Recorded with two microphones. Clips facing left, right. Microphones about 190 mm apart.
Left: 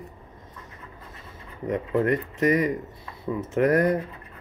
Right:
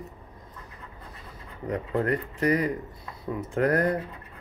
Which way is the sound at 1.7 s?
20° left (ahead or behind).